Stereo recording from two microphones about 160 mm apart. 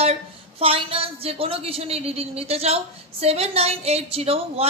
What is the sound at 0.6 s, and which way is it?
A woman's voice, 35° right (ahead or behind).